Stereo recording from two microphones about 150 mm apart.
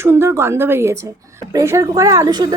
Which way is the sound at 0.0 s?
15° right (ahead or behind).